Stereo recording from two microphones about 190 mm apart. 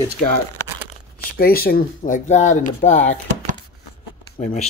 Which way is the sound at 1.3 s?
50° left (ahead or behind).